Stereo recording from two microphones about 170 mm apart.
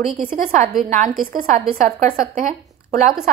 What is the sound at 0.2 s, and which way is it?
Speech, 50° right (ahead or behind).